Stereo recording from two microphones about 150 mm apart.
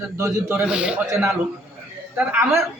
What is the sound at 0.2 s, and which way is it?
A woman's voice, 15° right (ahead or behind).